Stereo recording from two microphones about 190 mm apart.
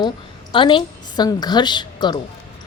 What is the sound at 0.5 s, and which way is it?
A woman's voice, 25° left (ahead or behind).